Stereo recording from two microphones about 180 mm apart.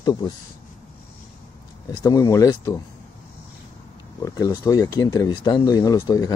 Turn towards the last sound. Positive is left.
turn(degrees=20)  # may be behind; listen again after turning